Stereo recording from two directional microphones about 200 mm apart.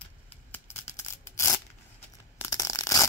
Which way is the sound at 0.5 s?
15° left (ahead or behind).